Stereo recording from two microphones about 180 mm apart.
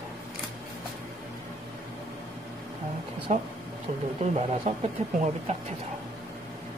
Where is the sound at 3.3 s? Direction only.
40° right (ahead or behind).